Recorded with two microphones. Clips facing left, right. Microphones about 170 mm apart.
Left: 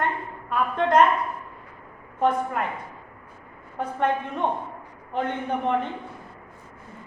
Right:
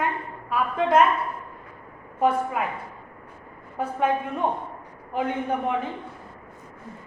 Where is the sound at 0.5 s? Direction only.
5° right (ahead or behind).